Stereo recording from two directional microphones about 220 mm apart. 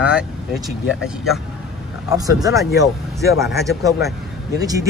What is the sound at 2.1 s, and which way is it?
Speech, 15° right (ahead or behind).